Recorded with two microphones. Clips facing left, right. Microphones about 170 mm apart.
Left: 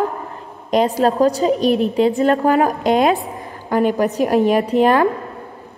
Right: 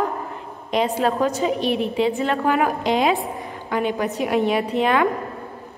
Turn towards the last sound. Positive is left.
turn(degrees=40)  # may be behind; listen again after turning